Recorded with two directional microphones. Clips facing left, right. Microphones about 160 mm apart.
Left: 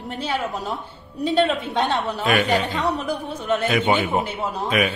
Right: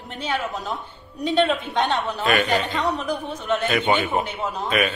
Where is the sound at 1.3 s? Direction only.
5° left (ahead or behind).